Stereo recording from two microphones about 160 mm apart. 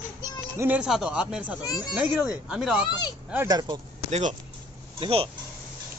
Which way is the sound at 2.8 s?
25° left (ahead or behind).